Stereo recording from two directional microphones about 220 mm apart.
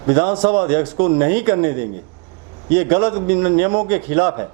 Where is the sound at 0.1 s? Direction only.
25° right (ahead or behind).